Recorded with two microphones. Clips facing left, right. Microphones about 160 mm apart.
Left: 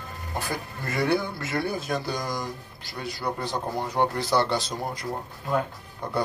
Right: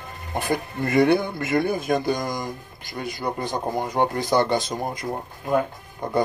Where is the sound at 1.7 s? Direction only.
50° right (ahead or behind).